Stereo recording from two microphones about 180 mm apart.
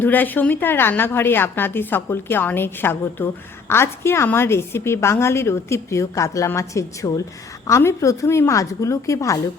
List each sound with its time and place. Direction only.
0.0 s a woman's voice: 10° left (ahead or behind)